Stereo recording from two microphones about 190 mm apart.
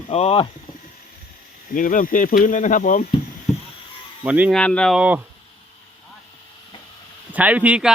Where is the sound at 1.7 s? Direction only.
45° left (ahead or behind).